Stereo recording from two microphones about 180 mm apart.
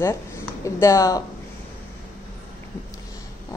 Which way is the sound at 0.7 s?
15° left (ahead or behind).